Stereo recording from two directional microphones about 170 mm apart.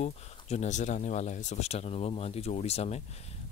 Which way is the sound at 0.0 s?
40° left (ahead or behind).